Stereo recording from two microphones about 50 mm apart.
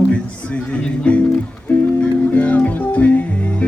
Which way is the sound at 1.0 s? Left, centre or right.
Left.